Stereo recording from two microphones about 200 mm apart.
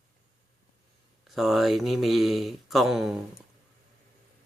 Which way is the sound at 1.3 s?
Centre (ahead or behind).